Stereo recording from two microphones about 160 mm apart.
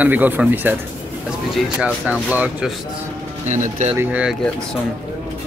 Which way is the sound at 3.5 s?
50° right (ahead or behind).